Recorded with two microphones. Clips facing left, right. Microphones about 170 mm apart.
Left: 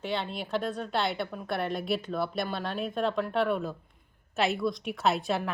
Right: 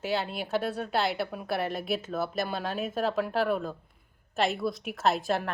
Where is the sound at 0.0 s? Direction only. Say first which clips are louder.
Right 2 dB; 5° right (ahead or behind).